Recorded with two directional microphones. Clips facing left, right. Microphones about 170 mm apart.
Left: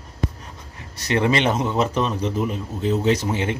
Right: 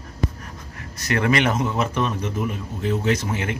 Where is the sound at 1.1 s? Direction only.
25° left (ahead or behind).